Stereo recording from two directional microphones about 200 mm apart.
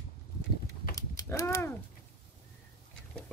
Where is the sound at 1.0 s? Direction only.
15° left (ahead or behind).